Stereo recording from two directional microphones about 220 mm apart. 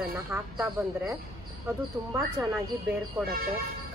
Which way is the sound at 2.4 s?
10° right (ahead or behind).